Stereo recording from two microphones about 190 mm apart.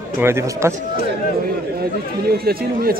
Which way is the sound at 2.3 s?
50° right (ahead or behind).